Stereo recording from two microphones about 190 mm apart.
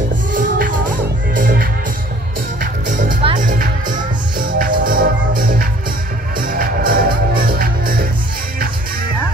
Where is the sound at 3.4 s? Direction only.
45° right (ahead or behind).